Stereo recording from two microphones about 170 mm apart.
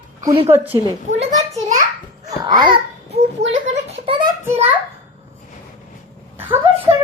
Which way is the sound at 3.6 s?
35° right (ahead or behind).